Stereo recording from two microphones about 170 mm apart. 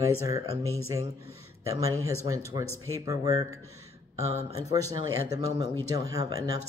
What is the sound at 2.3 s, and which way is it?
Speech, 20° right (ahead or behind).